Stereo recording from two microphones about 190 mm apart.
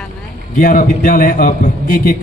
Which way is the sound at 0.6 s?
45° left (ahead or behind).